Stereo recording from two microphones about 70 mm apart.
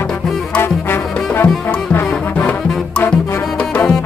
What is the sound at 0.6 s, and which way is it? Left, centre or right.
Music, left.